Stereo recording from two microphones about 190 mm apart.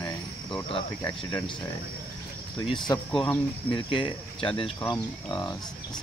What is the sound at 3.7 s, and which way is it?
Cricket, 25° left (ahead or behind).